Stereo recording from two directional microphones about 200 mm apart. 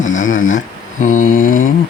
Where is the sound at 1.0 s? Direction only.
40° left (ahead or behind).